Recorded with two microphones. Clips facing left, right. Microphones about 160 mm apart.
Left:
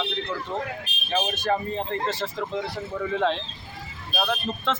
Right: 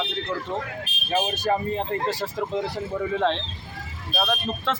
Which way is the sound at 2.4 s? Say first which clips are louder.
Right 2 dB; 10° right (ahead or behind).